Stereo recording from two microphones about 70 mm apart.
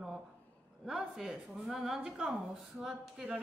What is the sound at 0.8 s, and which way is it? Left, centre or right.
Speech, centre.